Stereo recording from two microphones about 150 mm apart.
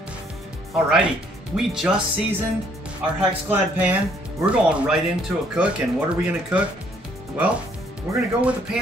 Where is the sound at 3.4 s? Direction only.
10° right (ahead or behind).